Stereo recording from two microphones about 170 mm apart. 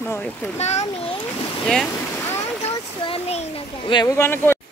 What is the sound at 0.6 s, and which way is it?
Speech, 40° left (ahead or behind).